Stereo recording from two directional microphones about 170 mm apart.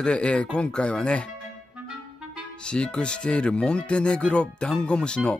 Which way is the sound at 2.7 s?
5° left (ahead or behind).